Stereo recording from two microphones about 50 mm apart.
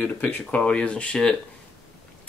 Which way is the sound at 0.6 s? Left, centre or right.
Left.